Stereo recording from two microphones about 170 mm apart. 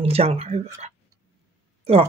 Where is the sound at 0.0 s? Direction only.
35° right (ahead or behind).